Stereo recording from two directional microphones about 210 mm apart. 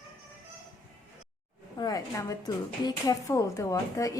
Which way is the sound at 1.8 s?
15° left (ahead or behind).